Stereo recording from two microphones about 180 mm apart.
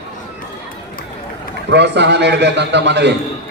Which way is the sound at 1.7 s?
70° right (ahead or behind).